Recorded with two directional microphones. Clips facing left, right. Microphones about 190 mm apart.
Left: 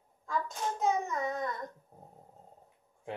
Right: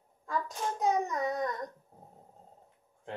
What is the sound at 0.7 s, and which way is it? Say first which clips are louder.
Child singing: right 2 dB; 15° right (ahead or behind).